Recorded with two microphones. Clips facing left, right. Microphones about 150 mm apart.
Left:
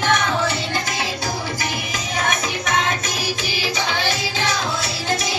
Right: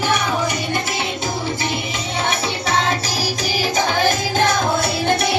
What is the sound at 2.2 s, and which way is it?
Music, 30° right (ahead or behind).